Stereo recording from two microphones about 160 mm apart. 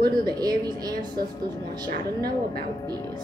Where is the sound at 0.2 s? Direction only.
25° right (ahead or behind).